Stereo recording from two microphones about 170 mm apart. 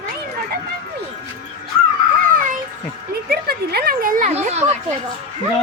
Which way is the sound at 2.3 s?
50° right (ahead or behind).